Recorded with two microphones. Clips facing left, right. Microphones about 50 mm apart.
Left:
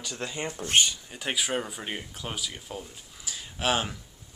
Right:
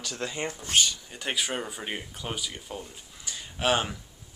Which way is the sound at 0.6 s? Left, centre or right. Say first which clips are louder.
Left 2 dB; left.